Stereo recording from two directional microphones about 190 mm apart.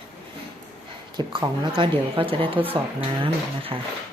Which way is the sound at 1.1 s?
25° right (ahead or behind).